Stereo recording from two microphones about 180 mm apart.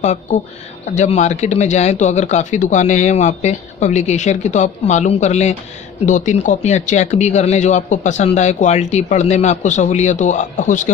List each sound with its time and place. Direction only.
0.0 s speech: 40° left (ahead or behind)